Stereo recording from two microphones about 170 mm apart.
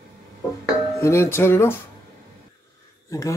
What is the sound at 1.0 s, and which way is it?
Speech, 15° left (ahead or behind).